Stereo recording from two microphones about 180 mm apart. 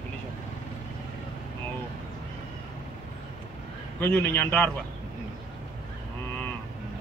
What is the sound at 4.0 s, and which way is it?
Speech, 10° left (ahead or behind).